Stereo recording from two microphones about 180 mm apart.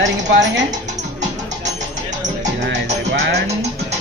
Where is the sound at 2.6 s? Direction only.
70° right (ahead or behind).